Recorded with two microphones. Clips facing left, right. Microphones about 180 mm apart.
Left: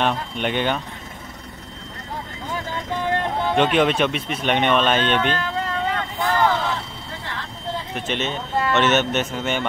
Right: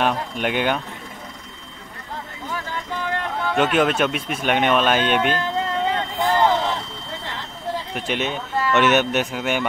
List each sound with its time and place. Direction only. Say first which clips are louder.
0.0 s speech: right 1 dB; 5° right (ahead or behind)
3.2 s music: left 3 dB; 25° left (ahead or behind)
3.5 s speech: even; 5° right (ahead or behind)
5.4 s vehicle: right 2 dB; 25° right (ahead or behind)
7.9 s speech: even; 10° right (ahead or behind)